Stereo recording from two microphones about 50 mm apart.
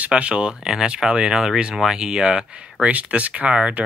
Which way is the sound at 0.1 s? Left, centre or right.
Right.